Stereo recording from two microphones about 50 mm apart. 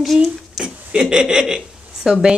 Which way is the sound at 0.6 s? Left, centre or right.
Right.